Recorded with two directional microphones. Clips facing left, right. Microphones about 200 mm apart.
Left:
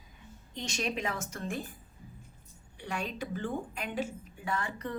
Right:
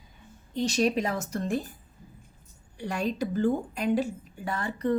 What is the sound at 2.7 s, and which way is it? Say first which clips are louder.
Speech: right 7 dB; 40° right (ahead or behind).